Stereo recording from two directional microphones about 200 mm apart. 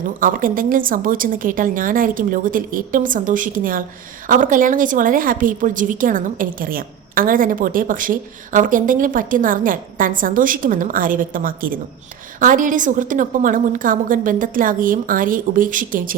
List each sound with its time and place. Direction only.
0.2 s a woman's voice: 45° right (ahead or behind)